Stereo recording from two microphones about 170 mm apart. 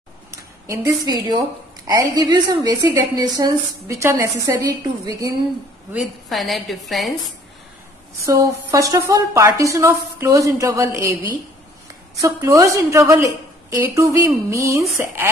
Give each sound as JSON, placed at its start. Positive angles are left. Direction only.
{"t": 0.3, "sound": "a woman's voice", "side_deg": -15}
{"t": 5.9, "sound": "a woman's voice", "side_deg": 0}
{"t": 8.2, "sound": "a woman's voice", "side_deg": -20}